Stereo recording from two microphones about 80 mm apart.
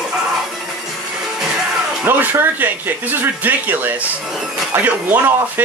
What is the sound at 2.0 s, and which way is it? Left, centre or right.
A man's voice, right.